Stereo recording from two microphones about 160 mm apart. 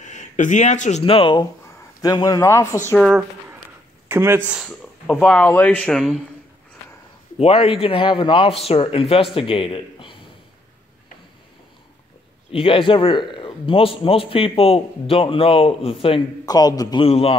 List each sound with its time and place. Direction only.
0.0 s a man's voice: 50° left (ahead or behind); by 2.8 s 15° left (ahead or behind)
3.0 s a woman's voice: 5° right (ahead or behind)
4.6 s speech: 10° left (ahead or behind)
7.3 s a man's voice: 35° left (ahead or behind)
12.4 s a man's voice: 35° left (ahead or behind)
16.4 s a man's voice: 25° left (ahead or behind)
17.0 s a man's voice: 35° left (ahead or behind)